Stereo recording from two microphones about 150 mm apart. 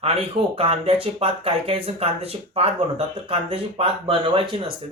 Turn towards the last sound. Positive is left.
turn(degrees=-35)  # may be behind; listen again after turning